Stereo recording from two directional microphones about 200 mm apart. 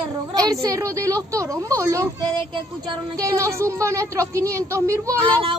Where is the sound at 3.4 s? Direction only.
15° right (ahead or behind).